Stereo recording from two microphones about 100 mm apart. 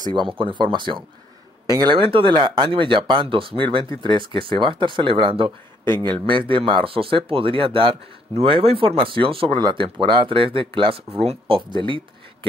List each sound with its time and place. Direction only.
0.0 s speech: 50° right (ahead or behind)
1.7 s speech: 40° right (ahead or behind)
2.0 s speech: 65° right (ahead or behind)